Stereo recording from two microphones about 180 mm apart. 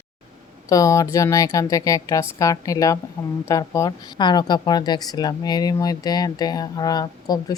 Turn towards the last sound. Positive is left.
turn(degrees=20)  # may be behind; listen again after turning